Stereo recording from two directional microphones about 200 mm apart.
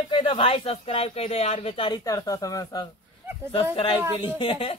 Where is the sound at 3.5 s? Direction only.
30° left (ahead or behind).